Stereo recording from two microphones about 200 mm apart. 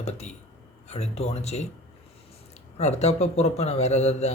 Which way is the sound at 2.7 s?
35° left (ahead or behind).